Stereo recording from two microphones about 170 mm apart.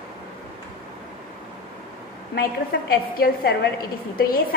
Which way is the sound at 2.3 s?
60° left (ahead or behind).